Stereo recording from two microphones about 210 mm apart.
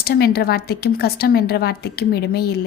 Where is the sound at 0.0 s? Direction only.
50° left (ahead or behind).